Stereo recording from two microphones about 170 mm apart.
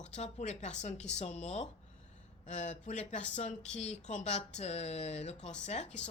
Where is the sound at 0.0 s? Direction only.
45° left (ahead or behind).